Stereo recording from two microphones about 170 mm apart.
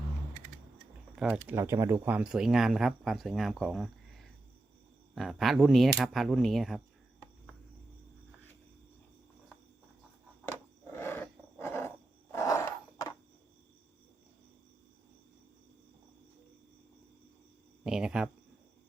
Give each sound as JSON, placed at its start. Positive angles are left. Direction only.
{"t": 1.1, "sound": "speech", "side_deg": -5}
{"t": 10.9, "sound": "roar", "side_deg": 15}
{"t": 12.3, "sound": "a sound", "side_deg": 15}
{"t": 17.8, "sound": "cricket", "side_deg": -5}